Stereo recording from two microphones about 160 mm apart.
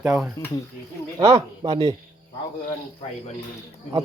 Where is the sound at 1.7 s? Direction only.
40° right (ahead or behind).